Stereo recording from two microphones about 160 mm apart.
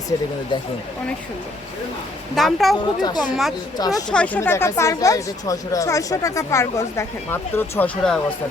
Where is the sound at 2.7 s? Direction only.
25° left (ahead or behind).